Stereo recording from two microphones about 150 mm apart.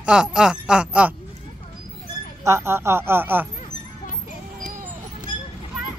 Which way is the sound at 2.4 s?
20° right (ahead or behind).